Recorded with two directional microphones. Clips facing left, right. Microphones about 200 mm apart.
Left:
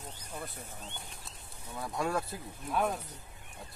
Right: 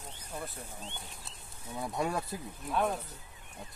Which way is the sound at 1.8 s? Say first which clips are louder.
Even; 20° right (ahead or behind).